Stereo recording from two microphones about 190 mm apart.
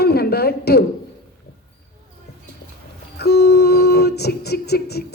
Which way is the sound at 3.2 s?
60° left (ahead or behind).